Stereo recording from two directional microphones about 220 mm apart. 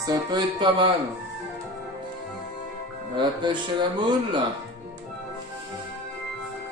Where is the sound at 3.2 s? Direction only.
20° right (ahead or behind).